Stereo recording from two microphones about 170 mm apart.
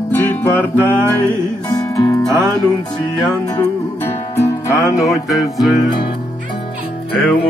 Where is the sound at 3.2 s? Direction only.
10° left (ahead or behind).